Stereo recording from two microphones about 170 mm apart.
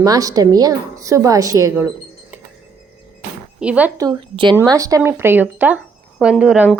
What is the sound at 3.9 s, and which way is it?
A woman's voice, 20° right (ahead or behind).